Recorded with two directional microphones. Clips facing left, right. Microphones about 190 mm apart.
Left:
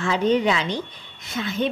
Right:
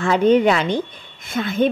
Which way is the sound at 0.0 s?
55° right (ahead or behind).